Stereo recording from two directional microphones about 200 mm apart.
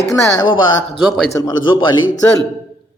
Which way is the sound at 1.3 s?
20° left (ahead or behind).